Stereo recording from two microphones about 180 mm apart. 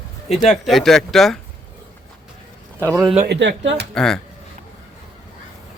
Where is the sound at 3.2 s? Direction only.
80° right.